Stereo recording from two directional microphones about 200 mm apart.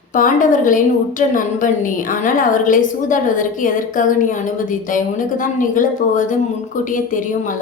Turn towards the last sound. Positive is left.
turn(degrees=40)  # may be behind; listen again after turning